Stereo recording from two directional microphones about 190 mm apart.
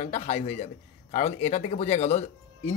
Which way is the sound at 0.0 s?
35° left (ahead or behind).